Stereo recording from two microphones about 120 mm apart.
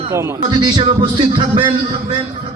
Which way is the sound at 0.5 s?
40° right (ahead or behind).